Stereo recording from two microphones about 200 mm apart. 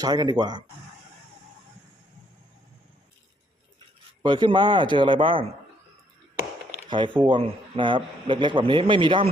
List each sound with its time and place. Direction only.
0.0 s a man's voice: 20° right (ahead or behind)
4.2 s a man's voice: 25° right (ahead or behind)
6.8 s a man's voice: 25° right (ahead or behind)